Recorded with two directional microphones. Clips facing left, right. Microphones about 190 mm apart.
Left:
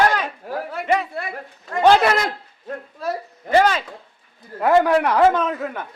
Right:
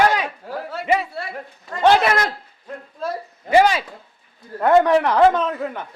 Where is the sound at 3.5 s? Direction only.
10° right (ahead or behind).